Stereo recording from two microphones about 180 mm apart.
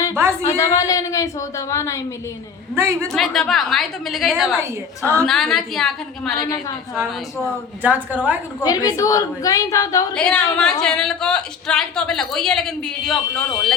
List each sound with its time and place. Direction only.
0.1 s a sound: 15° right (ahead or behind)
0.4 s a woman's voice: 20° left (ahead or behind)
2.7 s a woman's voice: 15° right (ahead or behind)
3.1 s a woman's voice: centre (ahead or behind)
4.6 s a woman's voice: 15° right (ahead or behind)
5.2 s a woman's voice: centre (ahead or behind)
6.3 s a woman's voice: 20° left (ahead or behind)
7.8 s a woman's voice: 10° right (ahead or behind)
8.6 s a woman's voice: 20° left (ahead or behind)
10.2 s a woman's voice: 5° left (ahead or behind)